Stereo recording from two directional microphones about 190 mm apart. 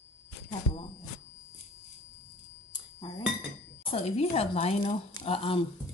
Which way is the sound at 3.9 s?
30° left (ahead or behind).